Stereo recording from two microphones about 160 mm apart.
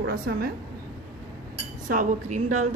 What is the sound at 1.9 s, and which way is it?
Speech, 50° right (ahead or behind).